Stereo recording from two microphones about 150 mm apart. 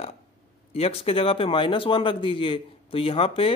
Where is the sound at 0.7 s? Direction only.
40° left (ahead or behind).